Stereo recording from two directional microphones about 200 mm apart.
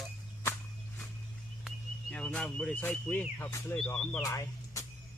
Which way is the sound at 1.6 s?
5° left (ahead or behind).